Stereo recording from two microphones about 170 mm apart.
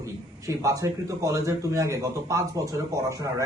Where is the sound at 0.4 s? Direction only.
20° right (ahead or behind).